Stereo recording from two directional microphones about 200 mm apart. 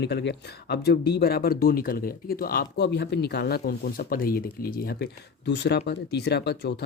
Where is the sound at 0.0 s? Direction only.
55° left (ahead or behind).